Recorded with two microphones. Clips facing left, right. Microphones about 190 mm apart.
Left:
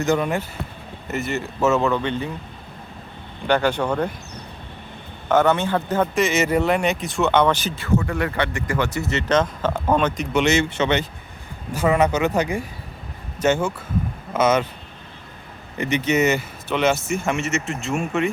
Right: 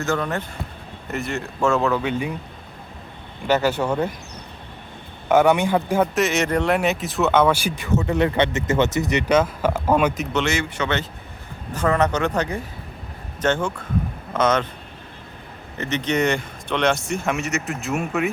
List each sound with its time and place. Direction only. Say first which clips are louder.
0.0 s speech: left 3 dB; 15° left (ahead or behind)
1.0 s speech: left 2 dB; centre (ahead or behind)
3.4 s speech: even; 5° right (ahead or behind)
5.3 s speech: right 2 dB; 10° right (ahead or behind)
7.9 s speech: right 3 dB; 20° right (ahead or behind)
10.3 s speech: left 4 dB; 20° left (ahead or behind)
15.8 s speech: left 2 dB; 10° left (ahead or behind)